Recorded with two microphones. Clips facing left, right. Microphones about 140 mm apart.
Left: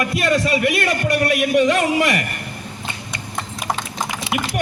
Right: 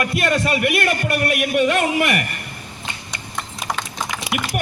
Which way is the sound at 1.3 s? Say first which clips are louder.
Left 2 dB; 30° left (ahead or behind).